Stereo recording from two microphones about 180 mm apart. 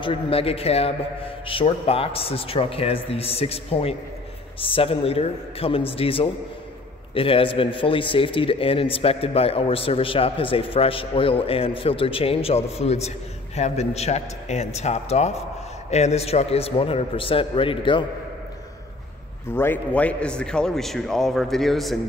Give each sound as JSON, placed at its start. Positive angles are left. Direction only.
{"t": 0.0, "sound": "a man's voice", "side_deg": 30}
{"t": 19.5, "sound": "a man's voice", "side_deg": 10}